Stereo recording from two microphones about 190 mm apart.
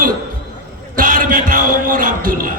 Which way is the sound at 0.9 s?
45° right (ahead or behind).